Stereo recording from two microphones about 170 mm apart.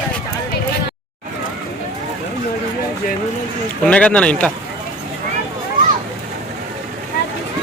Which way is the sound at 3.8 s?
5° left (ahead or behind).